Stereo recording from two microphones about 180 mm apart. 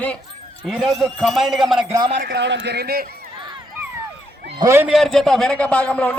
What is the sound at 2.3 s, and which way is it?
Speech, 75° right (ahead or behind).